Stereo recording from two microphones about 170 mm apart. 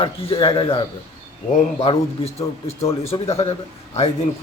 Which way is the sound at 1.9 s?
35° left (ahead or behind).